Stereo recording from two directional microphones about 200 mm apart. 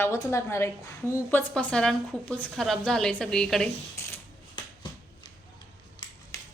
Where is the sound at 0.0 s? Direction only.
15° left (ahead or behind).